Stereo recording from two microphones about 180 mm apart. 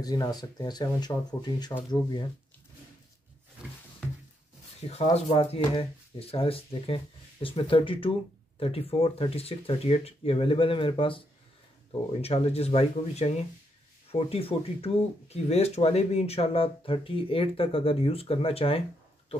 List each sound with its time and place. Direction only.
0.0 s speech: 20° left (ahead or behind)
4.7 s speech: 35° left (ahead or behind)